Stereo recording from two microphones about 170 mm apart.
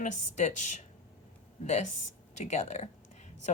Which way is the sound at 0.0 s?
45° left (ahead or behind).